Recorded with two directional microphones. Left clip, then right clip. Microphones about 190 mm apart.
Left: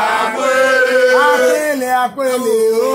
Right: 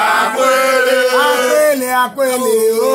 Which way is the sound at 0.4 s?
60° right (ahead or behind).